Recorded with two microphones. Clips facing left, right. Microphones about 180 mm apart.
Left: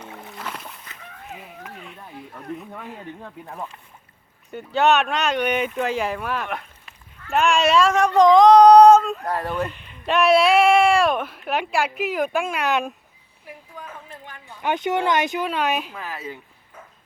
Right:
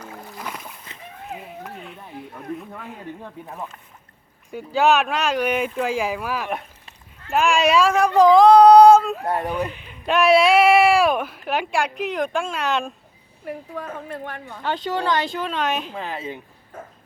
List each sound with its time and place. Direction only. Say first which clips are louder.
0.1 s splash: even; centre (ahead or behind)
1.8 s a sound: right 2 dB; centre (ahead or behind)
2.6 s speech: even; centre (ahead or behind)
9.2 s speech: right 1 dB; 20° right (ahead or behind)
9.7 s speech: right 1 dB; 5° right (ahead or behind)
13.4 s a woman's voice: right 9 dB; 60° right (ahead or behind)
14.6 s speech: left 2 dB; 20° left (ahead or behind)
15.4 s a woman's voice: left 1 dB; 10° left (ahead or behind)
15.9 s speech: right 3 dB; 25° right (ahead or behind)